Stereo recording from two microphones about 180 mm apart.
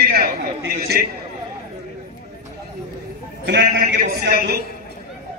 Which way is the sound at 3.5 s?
60° right (ahead or behind).